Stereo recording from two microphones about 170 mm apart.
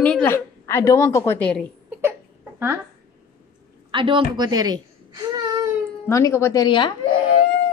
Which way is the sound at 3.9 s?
30° right (ahead or behind).